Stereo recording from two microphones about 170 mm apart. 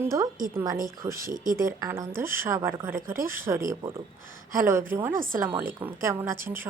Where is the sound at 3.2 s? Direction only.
55° right (ahead or behind).